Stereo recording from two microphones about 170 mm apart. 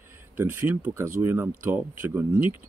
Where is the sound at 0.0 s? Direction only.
15° right (ahead or behind).